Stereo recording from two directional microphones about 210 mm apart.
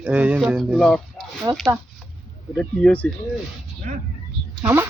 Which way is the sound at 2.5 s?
5° left (ahead or behind).